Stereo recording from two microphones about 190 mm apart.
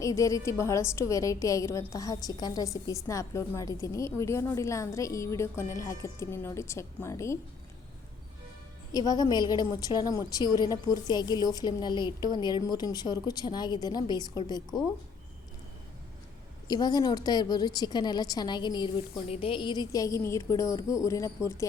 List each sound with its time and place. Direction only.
0.0 s a woman's voice: 15° left (ahead or behind)
8.9 s a woman's voice: 20° left (ahead or behind)
16.6 s a woman's voice: 20° left (ahead or behind)